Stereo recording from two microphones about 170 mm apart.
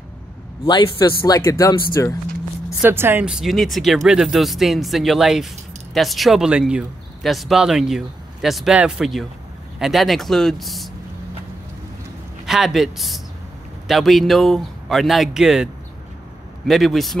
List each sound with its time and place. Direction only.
0.7 s speech: 25° left (ahead or behind)
2.8 s speech: 15° right (ahead or behind)
12.4 s speech: centre (ahead or behind)